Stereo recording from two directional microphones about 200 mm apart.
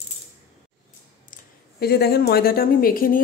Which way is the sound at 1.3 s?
50° left (ahead or behind).